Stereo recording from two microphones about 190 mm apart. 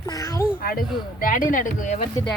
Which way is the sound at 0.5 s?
50° left (ahead or behind).